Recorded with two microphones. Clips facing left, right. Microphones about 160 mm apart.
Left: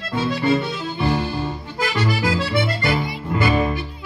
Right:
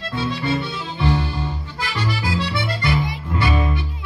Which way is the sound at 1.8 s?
45° left (ahead or behind).